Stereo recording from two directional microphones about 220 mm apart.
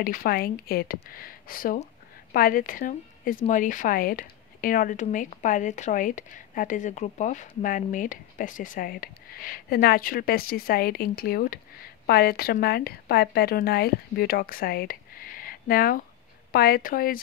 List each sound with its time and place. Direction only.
0.0 s a woman's voice: 40° left (ahead or behind)